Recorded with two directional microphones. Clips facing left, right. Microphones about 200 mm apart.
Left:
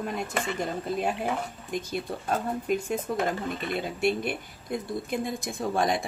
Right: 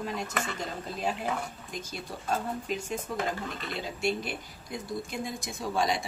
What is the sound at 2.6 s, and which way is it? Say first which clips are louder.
A woman's voice: left 6 dB; 55° left (ahead or behind).